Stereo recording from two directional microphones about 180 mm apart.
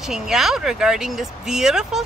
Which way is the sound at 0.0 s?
5° right (ahead or behind).